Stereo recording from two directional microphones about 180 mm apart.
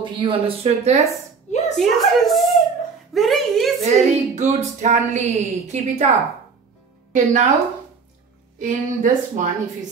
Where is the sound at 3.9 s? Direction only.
40° right (ahead or behind).